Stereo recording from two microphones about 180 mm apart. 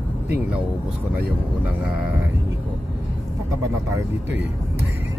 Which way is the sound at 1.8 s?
5° right (ahead or behind).